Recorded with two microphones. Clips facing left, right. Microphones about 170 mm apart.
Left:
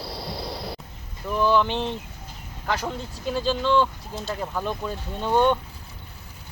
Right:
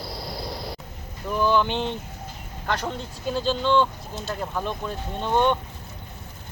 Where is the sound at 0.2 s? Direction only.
Centre (ahead or behind).